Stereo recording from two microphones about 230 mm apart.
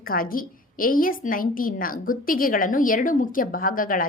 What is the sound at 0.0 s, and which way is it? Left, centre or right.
A woman's voice, left.